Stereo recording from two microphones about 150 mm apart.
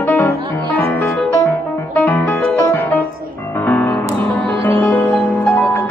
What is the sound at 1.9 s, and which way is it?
Music, 10° left (ahead or behind).